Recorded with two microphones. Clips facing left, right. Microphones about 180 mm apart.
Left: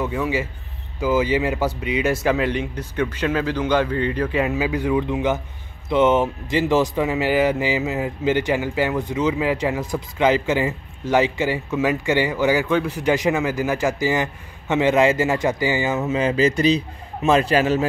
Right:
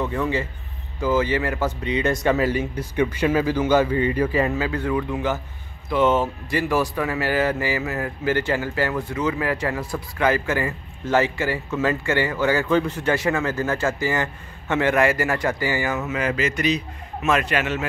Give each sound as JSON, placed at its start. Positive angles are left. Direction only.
{"t": 0.0, "sound": "a man's voice", "side_deg": 5}
{"t": 4.6, "sound": "speech", "side_deg": 15}
{"t": 12.6, "sound": "a man's voice", "side_deg": 0}
{"t": 12.9, "sound": "a man's voice", "side_deg": 15}